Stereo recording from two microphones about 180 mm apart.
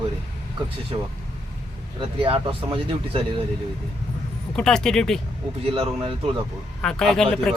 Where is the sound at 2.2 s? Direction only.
30° right (ahead or behind).